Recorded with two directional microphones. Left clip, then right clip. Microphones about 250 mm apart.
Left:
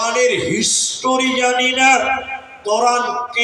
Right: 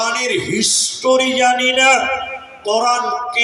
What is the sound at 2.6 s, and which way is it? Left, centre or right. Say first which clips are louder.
Speech: even; right.